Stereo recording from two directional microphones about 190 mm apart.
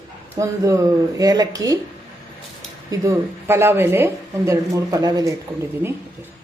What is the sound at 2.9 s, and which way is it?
Speech, 15° right (ahead or behind).